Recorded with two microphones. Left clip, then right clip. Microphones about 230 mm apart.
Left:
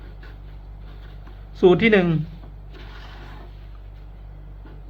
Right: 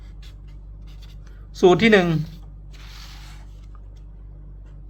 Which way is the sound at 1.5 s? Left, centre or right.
Centre.